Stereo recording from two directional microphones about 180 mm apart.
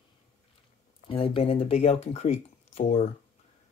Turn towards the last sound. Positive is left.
turn(degrees=35)  # may be behind; listen again after turning